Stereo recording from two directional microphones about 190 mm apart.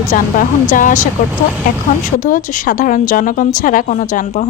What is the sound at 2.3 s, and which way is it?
Speech, 45° left (ahead or behind).